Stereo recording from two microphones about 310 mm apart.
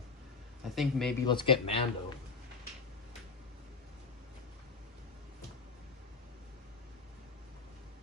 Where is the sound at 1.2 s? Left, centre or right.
Centre.